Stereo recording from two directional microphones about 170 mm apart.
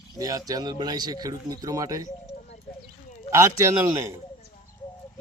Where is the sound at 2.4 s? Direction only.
45° left (ahead or behind).